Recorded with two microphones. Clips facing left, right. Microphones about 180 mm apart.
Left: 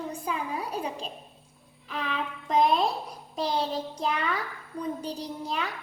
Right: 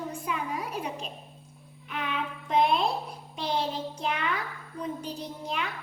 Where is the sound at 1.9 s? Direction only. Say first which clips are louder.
Left 1 dB; 35° left (ahead or behind).